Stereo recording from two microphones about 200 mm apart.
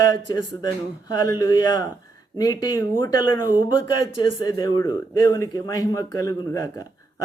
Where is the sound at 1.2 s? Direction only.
20° left (ahead or behind).